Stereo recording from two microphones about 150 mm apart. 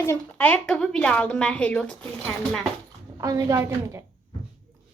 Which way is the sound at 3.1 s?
25° right (ahead or behind).